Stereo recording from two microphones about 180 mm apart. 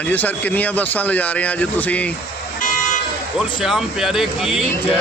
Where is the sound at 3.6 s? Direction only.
5° right (ahead or behind).